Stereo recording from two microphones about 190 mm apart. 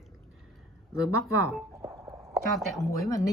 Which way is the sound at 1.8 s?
20° right (ahead or behind).